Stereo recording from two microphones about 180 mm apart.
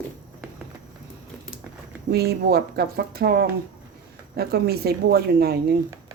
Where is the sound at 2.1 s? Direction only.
60° right (ahead or behind).